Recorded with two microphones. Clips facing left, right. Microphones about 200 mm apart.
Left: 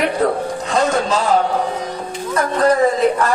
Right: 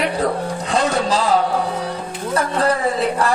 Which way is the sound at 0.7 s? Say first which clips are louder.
Left 2 dB; 35° right (ahead or behind).